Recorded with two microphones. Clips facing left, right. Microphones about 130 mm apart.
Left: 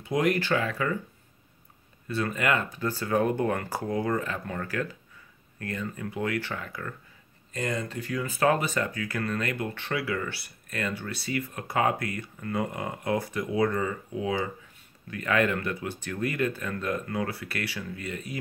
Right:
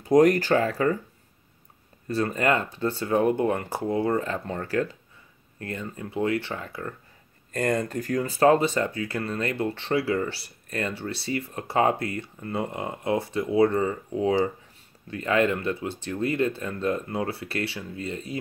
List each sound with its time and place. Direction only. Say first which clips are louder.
0.0 s speech: right 8 dB; 40° right (ahead or behind)
2.0 s speech: right 3 dB; 35° right (ahead or behind)
7.5 s speech: right 6 dB; 50° right (ahead or behind); by 18.4 s 30° right (ahead or behind)